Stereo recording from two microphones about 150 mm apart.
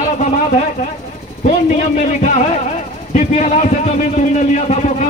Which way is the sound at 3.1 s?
50° left (ahead or behind).